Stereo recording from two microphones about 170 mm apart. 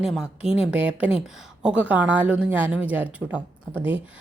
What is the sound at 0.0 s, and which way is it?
A woman's voice, 5° right (ahead or behind).